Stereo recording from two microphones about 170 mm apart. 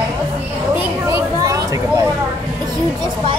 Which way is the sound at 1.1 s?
20° right (ahead or behind).